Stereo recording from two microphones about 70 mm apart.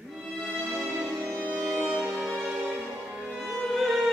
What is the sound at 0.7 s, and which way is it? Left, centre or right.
Music, centre.